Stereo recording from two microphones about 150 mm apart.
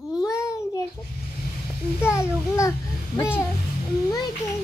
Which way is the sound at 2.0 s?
20° left (ahead or behind).